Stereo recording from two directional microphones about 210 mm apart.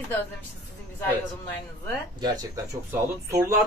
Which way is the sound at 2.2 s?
20° right (ahead or behind).